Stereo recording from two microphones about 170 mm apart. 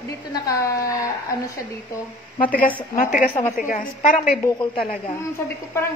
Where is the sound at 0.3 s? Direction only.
20° left (ahead or behind).